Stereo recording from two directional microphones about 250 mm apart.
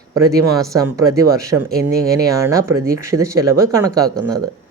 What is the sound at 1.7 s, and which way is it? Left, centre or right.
Speech, right.